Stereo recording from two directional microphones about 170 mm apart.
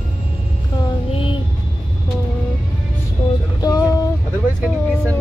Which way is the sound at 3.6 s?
20° left (ahead or behind).